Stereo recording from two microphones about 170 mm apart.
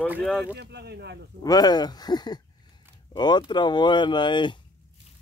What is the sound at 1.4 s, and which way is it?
Speech, 25° left (ahead or behind).